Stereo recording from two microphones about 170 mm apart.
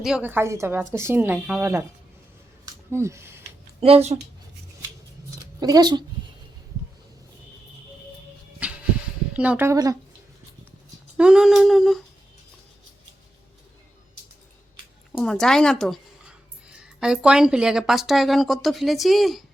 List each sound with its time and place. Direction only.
0.0 s speech: 5° right (ahead or behind)
2.9 s speech: 15° right (ahead or behind)
3.8 s speech: 35° right (ahead or behind)
5.5 s speech: 20° right (ahead or behind)
8.5 s music: 5° right (ahead or behind)
9.3 s speech: 10° right (ahead or behind)
11.2 s humming: 5° right (ahead or behind)
15.1 s speech: 5° left (ahead or behind)